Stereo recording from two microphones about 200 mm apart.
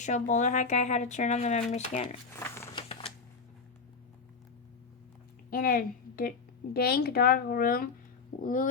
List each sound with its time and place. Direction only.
0.0 s speech: 35° left (ahead or behind)
5.5 s a woman's voice: 45° left (ahead or behind)